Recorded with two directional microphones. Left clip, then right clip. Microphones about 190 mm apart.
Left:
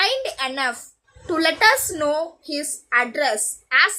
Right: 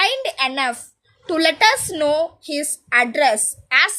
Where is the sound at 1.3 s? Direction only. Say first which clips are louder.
Right 1 dB; 35° right (ahead or behind).